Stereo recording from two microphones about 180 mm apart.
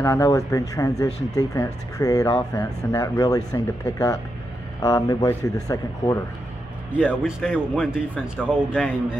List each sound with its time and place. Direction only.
0.0 s speech: 15° left (ahead or behind)
7.1 s speech: 5° right (ahead or behind)